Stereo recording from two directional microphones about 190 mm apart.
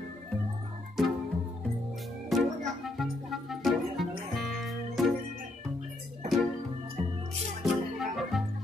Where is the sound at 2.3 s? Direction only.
Centre (ahead or behind).